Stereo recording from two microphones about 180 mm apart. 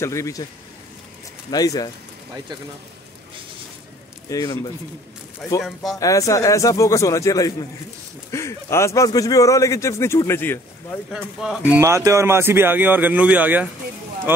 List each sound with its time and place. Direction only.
0.0 s speech: 15° left (ahead or behind)
1.5 s speech: 20° left (ahead or behind)
4.3 s speech: 20° left (ahead or behind)
5.9 s speech: 20° left (ahead or behind)
11.1 s speech: centre (ahead or behind)